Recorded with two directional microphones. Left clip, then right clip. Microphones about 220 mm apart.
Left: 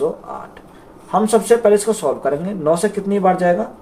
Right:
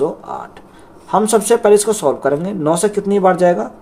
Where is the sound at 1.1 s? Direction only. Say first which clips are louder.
Right 1 dB; 50° right (ahead or behind).